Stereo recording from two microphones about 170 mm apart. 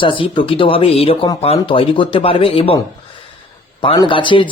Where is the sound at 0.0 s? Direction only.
30° left (ahead or behind).